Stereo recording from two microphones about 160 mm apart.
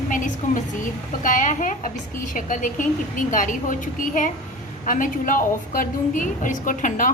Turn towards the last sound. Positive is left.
turn(degrees=55)  # may be behind; listen again after turning